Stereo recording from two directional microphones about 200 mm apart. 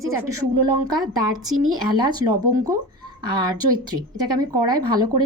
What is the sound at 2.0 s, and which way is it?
Speech, 20° right (ahead or behind).